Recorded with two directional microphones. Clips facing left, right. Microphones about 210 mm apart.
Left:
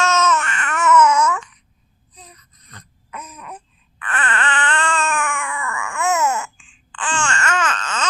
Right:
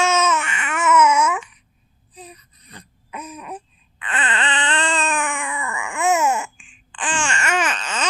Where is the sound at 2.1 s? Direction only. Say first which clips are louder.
Right 6 dB; 10° right (ahead or behind).